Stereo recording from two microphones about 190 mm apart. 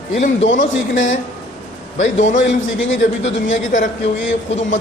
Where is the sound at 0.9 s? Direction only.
85° left.